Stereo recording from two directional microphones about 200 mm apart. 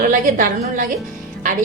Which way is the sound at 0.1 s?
45° right (ahead or behind).